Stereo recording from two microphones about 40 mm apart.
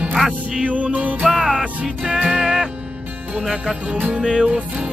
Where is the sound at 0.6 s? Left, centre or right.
Right.